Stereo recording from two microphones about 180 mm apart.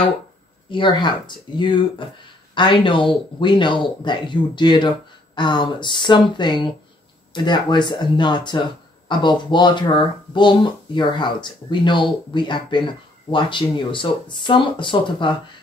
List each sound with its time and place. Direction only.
0.7 s speech: 25° left (ahead or behind)